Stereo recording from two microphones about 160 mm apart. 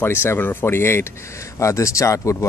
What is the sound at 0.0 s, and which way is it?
Speech, 15° left (ahead or behind).